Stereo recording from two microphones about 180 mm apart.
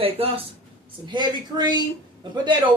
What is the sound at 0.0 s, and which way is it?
A woman's voice, 35° right (ahead or behind).